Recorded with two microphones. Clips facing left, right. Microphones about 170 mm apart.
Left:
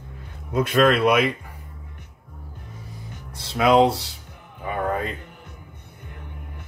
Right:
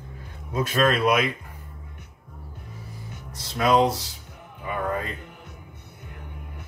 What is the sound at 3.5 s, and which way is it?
Speech, 65° left (ahead or behind).